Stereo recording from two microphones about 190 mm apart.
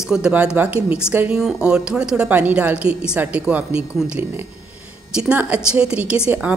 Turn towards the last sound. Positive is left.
turn(degrees=-5)  # may be behind; listen again after turning